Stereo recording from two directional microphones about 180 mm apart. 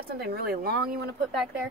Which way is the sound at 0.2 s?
60° right (ahead or behind).